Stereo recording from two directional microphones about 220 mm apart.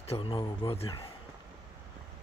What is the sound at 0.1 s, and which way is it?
Speech, 25° left (ahead or behind).